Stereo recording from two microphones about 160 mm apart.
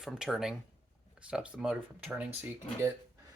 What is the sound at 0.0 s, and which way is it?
Speech, centre (ahead or behind).